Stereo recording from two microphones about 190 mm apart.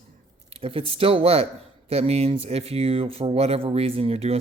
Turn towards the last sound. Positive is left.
turn(degrees=-30)  # may be behind; listen again after turning